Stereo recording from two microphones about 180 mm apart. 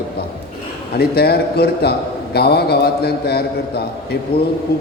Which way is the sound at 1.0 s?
60° left (ahead or behind).